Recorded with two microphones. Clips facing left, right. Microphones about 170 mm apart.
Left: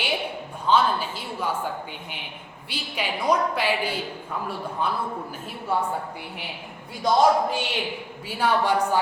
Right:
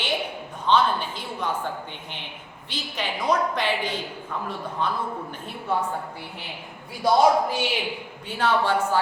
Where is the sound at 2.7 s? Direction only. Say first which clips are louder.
Left 1 dB; 10° left (ahead or behind).